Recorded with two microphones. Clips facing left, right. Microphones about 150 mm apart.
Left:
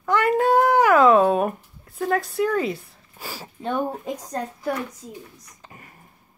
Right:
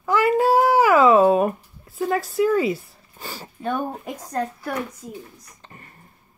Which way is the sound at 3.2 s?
5° left (ahead or behind).